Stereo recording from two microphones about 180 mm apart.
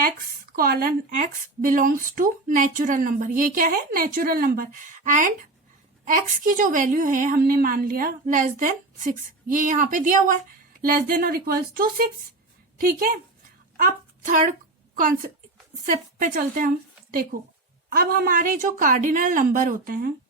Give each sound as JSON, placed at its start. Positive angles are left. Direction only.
{"t": 0.5, "sound": "speech", "side_deg": -55}
{"t": 15.9, "sound": "a woman's voice", "side_deg": -50}